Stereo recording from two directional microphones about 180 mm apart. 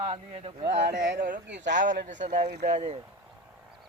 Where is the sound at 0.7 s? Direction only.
75° right (ahead or behind).